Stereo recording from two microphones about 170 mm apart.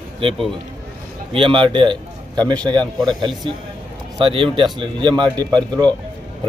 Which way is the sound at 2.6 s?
5° left (ahead or behind).